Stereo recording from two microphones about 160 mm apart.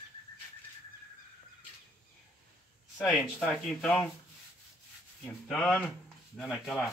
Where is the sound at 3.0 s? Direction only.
5° left (ahead or behind).